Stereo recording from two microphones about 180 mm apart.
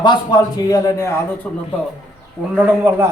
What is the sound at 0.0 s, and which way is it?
A man's voice, 25° left (ahead or behind).